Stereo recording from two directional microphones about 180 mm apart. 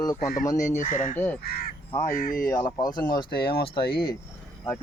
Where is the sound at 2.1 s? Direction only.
50° left (ahead or behind).